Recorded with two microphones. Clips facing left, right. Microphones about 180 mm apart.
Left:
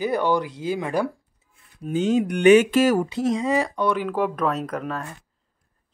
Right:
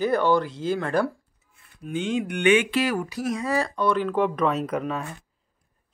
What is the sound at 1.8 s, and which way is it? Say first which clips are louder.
Speech: left 5 dB; 40° left (ahead or behind).